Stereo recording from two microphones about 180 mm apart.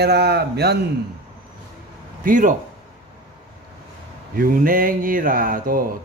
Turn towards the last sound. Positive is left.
turn(degrees=-50)  # may be behind; listen again after turning